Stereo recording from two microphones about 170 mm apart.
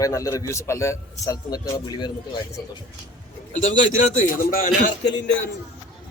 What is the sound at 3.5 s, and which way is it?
A man's voice, 50° left (ahead or behind).